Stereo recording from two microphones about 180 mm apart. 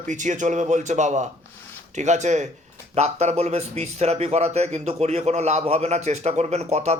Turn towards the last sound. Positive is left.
turn(degrees=-35)  # may be behind; listen again after turning